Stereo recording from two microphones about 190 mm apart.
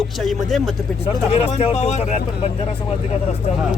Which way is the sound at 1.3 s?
30° left (ahead or behind).